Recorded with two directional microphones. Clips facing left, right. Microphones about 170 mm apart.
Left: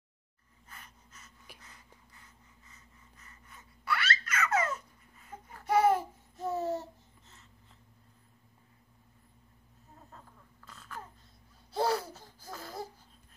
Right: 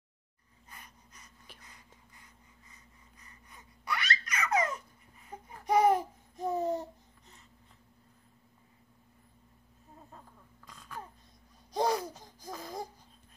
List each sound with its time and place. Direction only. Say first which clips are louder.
0.7 s pant: even; 15° right (ahead or behind)
3.2 s babbling: even; 15° right (ahead or behind)
10.1 s a sound: right 1 dB; 15° right (ahead or behind)
11.7 s laughter: even; 15° right (ahead or behind)
12.2 s baby laughter: right 2 dB; 15° right (ahead or behind)